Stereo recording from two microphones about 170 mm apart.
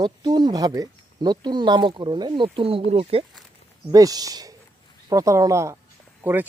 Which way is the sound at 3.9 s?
20° right (ahead or behind).